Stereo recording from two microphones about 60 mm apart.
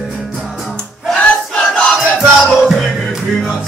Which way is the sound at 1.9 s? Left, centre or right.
Centre.